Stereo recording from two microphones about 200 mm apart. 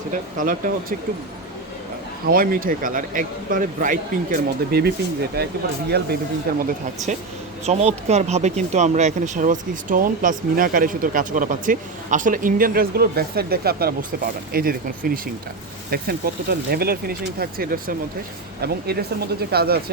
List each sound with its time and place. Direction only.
0.1 s a man's voice: 40° right (ahead or behind)
2.2 s a man's voice: 45° right (ahead or behind)
6.6 s a man's voice: 40° right (ahead or behind)